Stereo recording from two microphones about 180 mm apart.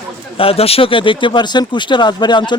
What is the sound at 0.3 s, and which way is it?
Speech, 30° left (ahead or behind).